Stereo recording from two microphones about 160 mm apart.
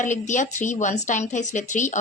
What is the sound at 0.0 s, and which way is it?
Speech, 50° left (ahead or behind).